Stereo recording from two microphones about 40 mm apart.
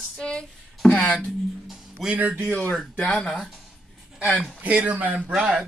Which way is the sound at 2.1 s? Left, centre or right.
Right.